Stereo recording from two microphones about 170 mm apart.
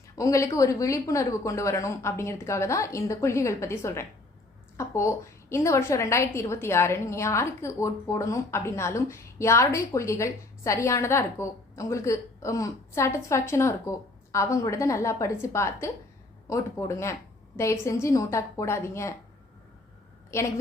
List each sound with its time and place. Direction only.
0.2 s a woman's voice: 20° left (ahead or behind)